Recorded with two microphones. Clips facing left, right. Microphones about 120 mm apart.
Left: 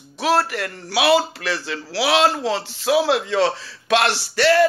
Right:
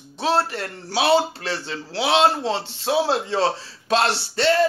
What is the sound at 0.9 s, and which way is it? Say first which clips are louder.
Speech: left 2 dB; 90° left.